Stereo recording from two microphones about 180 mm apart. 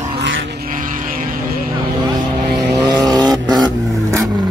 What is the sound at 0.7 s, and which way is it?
Vehicle, 50° right (ahead or behind).